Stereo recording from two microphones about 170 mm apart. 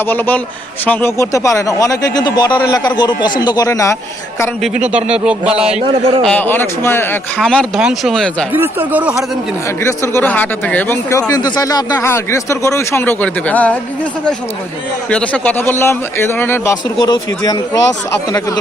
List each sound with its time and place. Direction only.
0.0 s a man's voice: 10° left (ahead or behind)
4.6 s speech: 5° right (ahead or behind)
5.8 s a man's voice: 30° right (ahead or behind)
6.2 s speech: 10° left (ahead or behind)
8.5 s speech: 10° right (ahead or behind)
9.6 s speech: 15° left (ahead or behind)
17.0 s a man's voice: 25° left (ahead or behind)